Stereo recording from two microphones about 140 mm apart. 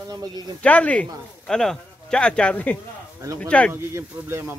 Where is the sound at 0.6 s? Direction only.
10° left (ahead or behind).